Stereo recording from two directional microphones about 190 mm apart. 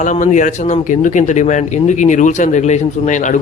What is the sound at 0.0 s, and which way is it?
Speech, 40° left (ahead or behind).